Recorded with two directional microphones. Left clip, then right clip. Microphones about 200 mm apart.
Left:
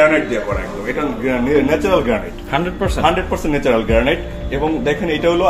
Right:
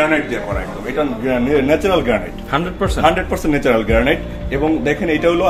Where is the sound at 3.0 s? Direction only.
30° right (ahead or behind).